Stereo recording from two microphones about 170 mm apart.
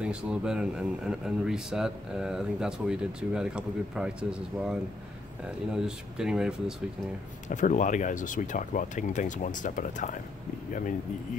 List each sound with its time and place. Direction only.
0.0 s speech: 5° right (ahead or behind)
7.4 s speech: 45° left (ahead or behind)